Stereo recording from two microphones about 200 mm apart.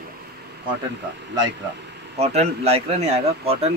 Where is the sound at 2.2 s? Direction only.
30° right (ahead or behind).